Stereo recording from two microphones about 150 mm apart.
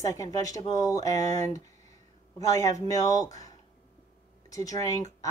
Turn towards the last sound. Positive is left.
turn(degrees=25)  # may be behind; listen again after turning